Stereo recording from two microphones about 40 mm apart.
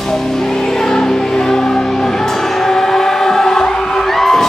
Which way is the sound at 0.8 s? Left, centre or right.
Centre.